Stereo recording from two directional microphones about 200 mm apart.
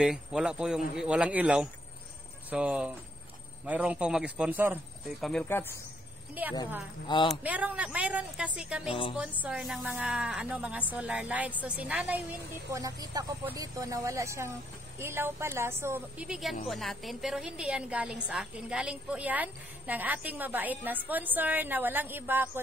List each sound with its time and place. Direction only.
0.0 s a woman's voice: 5° right (ahead or behind)
5.2 s speech: 5° left (ahead or behind)
7.2 s a woman's voice: 5° right (ahead or behind)
12.6 s a woman's voice: 15° right (ahead or behind)